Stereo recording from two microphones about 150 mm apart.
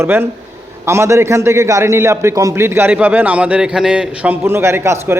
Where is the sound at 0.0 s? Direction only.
15° right (ahead or behind).